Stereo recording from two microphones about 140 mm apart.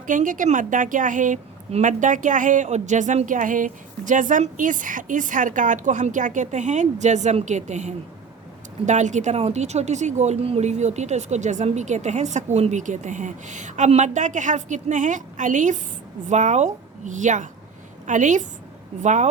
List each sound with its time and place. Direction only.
0.1 s a woman's voice: 70° right (ahead or behind)